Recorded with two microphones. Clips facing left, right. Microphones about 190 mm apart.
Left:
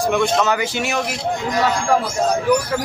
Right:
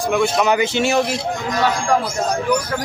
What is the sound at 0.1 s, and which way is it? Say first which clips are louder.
Speech: right 4 dB; 10° right (ahead or behind).